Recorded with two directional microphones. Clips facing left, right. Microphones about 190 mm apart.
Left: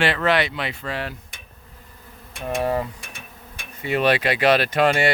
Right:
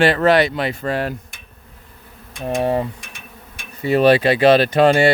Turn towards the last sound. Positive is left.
turn(degrees=-30)  # may be behind; listen again after turning